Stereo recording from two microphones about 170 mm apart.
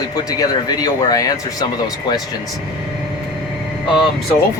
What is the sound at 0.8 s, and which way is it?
Speech, 20° left (ahead or behind).